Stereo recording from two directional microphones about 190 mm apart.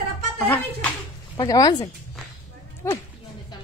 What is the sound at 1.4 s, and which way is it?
A man's voice, 20° left (ahead or behind).